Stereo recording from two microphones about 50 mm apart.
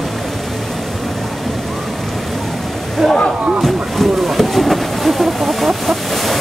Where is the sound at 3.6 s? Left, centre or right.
Centre.